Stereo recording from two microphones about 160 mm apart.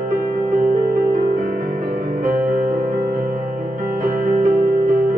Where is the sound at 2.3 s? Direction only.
55° right (ahead or behind).